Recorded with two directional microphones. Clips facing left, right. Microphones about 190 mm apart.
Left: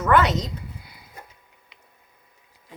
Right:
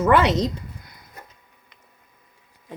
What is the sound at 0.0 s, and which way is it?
Speech, 30° right (ahead or behind).